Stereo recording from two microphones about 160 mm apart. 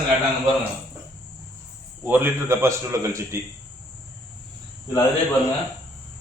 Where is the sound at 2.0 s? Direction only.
15° right (ahead or behind).